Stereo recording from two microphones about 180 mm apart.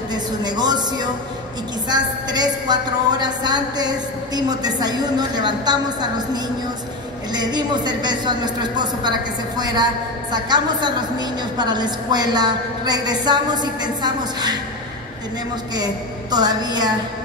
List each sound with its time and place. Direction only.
0.1 s a woman's voice: 25° right (ahead or behind)
15.7 s a woman's voice: 20° right (ahead or behind)